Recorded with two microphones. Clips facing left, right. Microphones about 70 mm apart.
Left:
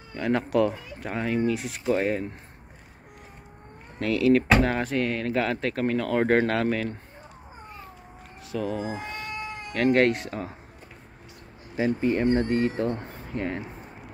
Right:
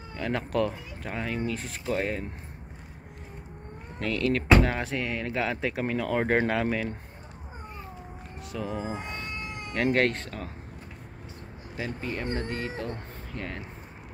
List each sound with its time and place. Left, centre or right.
0.1 s speech: centre
4.0 s speech: centre
8.5 s speech: centre
9.9 s speech: centre
11.7 s speech: left